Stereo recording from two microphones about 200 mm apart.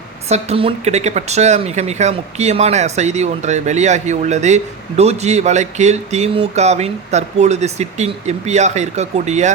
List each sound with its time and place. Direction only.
0.3 s speech: 35° right (ahead or behind)